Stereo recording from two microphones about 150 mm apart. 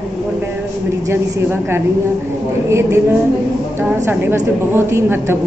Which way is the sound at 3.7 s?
15° right (ahead or behind).